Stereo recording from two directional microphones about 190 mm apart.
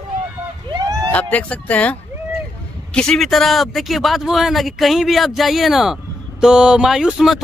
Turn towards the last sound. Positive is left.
turn(degrees=0)  # may be behind; listen again after turning